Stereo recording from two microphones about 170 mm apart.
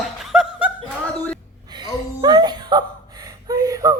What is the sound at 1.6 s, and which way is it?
Speech, 25° right (ahead or behind).